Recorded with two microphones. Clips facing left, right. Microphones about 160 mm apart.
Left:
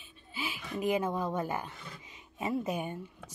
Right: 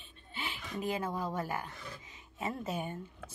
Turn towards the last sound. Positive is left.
turn(degrees=15)  # may be behind; listen again after turning